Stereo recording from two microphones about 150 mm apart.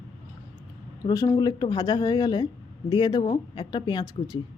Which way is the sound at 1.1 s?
25° left (ahead or behind).